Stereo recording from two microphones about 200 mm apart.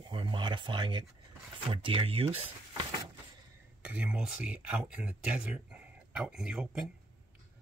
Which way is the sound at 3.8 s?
5° right (ahead or behind).